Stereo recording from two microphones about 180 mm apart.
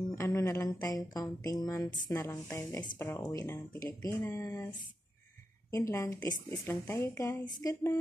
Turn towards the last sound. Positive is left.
turn(degrees=15)  # may be behind; listen again after turning